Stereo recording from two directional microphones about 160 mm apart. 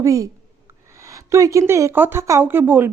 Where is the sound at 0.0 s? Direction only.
20° right (ahead or behind).